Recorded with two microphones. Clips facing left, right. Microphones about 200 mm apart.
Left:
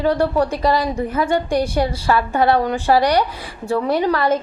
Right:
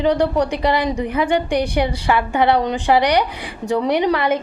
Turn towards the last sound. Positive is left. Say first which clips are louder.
# right 1 dB
turn(degrees=-15)  # may be behind; listen again after turning